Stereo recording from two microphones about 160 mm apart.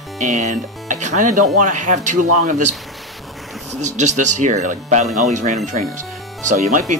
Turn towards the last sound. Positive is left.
turn(degrees=-50)  # may be behind; listen again after turning